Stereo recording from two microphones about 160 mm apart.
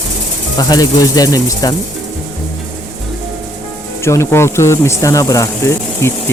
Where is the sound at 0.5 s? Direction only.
25° left (ahead or behind).